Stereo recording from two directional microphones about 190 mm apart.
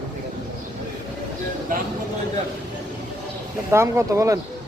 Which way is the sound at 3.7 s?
15° right (ahead or behind).